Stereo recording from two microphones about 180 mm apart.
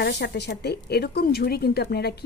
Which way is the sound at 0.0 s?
65° left (ahead or behind).